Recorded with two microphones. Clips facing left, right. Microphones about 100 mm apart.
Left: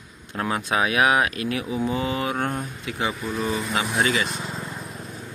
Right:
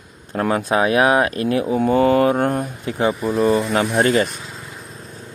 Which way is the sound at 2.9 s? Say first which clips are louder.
Right 8 dB; 40° right (ahead or behind).